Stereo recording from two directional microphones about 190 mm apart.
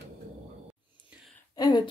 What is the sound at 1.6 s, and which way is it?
Speech, 20° left (ahead or behind).